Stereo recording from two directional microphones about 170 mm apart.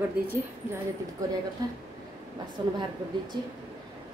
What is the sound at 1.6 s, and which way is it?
Speech, 20° right (ahead or behind).